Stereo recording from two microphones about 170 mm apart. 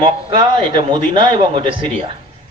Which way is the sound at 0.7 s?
30° right (ahead or behind).